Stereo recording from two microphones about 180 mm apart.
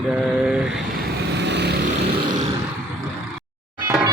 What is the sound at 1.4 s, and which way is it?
Vehicle, 70° right (ahead or behind).